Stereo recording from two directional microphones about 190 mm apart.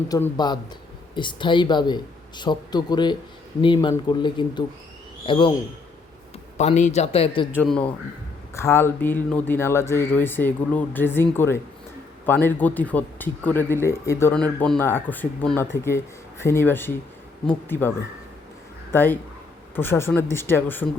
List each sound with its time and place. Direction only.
0.1 s speech: 20° left (ahead or behind)
6.6 s speech: 35° left (ahead or behind)
7.6 s a man's voice: 5° left (ahead or behind)